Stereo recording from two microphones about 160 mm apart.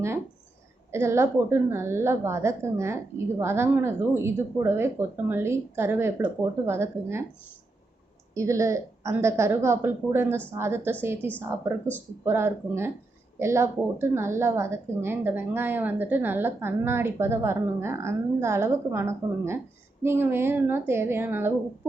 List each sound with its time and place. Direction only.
0.9 s a woman's voice: 15° right (ahead or behind)
8.4 s a woman's voice: 20° right (ahead or behind)